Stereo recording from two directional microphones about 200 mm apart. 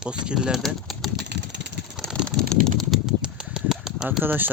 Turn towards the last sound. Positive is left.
turn(degrees=-10)  # may be behind; listen again after turning